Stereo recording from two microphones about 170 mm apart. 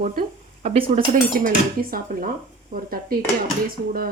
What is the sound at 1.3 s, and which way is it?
Dishes, 55° right (ahead or behind).